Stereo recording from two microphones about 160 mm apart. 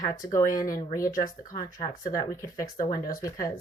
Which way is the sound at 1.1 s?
60° left (ahead or behind).